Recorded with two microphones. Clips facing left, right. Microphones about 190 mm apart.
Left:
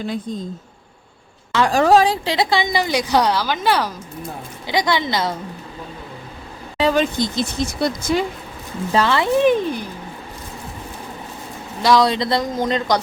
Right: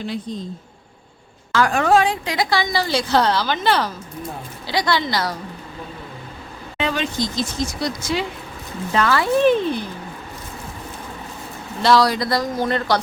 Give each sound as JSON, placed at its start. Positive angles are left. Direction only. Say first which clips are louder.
{"t": 1.5, "sound": "a woman's voice", "louder": "left 2 dB", "side_deg": 30}
{"t": 6.7, "sound": "speech", "louder": "left 5 dB", "side_deg": 40}
{"t": 8.9, "sound": "a woman's voice", "louder": "left 1 dB", "side_deg": 25}
{"t": 11.8, "sound": "speech", "louder": "even", "side_deg": 10}
{"t": 12.0, "sound": "a woman's voice", "louder": "left 1 dB", "side_deg": 25}